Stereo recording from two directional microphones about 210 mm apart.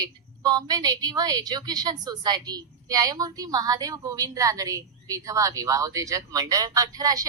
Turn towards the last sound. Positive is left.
turn(degrees=-15)  # may be behind; listen again after turning